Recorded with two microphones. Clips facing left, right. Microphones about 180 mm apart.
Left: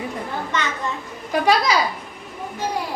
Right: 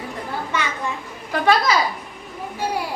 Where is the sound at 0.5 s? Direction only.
10° right (ahead or behind).